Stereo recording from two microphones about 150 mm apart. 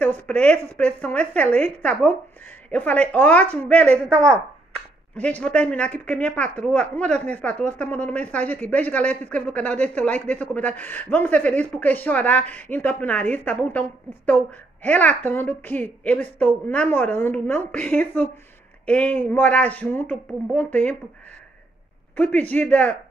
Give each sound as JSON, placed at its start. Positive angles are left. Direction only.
{"t": 0.0, "sound": "a woman's voice", "side_deg": 10}
{"t": 22.1, "sound": "a woman's voice", "side_deg": 10}